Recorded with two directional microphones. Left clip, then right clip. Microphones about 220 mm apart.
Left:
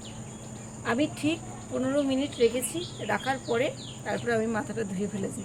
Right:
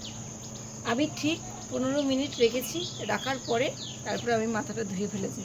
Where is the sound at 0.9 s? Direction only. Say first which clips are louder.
Left 1 dB; 5° left (ahead or behind).